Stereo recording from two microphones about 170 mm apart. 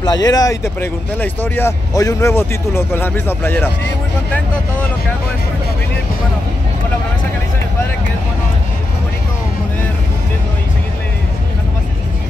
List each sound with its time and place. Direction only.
0.0 s speech: 25° left (ahead or behind)